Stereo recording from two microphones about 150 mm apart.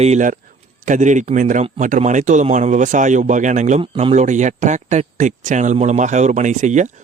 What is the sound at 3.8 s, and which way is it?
Speech, 35° right (ahead or behind).